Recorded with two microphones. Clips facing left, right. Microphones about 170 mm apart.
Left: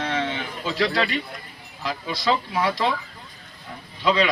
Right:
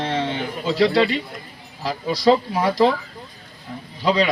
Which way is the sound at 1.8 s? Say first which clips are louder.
Right 7 dB; 40° right (ahead or behind).